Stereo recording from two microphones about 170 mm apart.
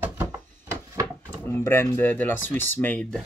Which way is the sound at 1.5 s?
15° left (ahead or behind).